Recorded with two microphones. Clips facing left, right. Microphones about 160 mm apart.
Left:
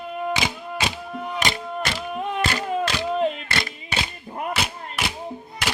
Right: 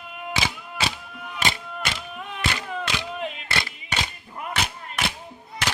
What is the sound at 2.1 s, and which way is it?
Music, 40° left (ahead or behind).